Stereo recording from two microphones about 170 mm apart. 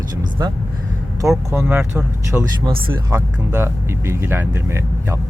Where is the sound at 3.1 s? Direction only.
15° right (ahead or behind).